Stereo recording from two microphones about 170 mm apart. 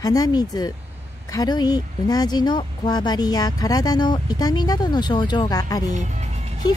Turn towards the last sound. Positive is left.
turn(degrees=-40)  # may be behind; listen again after turning